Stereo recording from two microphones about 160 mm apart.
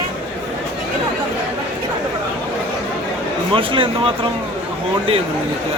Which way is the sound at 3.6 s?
35° right (ahead or behind).